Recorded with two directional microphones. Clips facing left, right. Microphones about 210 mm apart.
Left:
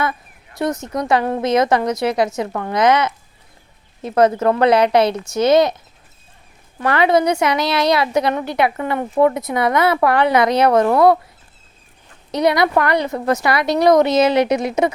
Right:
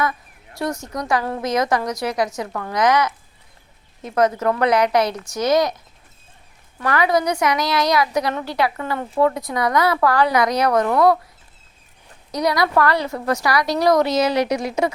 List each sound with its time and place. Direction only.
0.6 s a woman's voice: 20° left (ahead or behind)
6.7 s a woman's voice: 25° left (ahead or behind)
12.3 s a woman's voice: 25° left (ahead or behind)